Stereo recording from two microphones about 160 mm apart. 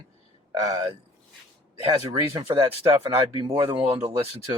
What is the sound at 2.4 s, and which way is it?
Speech, 35° right (ahead or behind).